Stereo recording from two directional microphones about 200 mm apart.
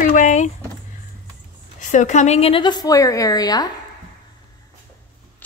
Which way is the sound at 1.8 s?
40° left (ahead or behind).